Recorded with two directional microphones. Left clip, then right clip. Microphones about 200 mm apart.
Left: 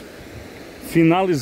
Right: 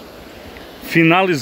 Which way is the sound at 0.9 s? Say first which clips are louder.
Right 3 dB; 15° left (ahead or behind).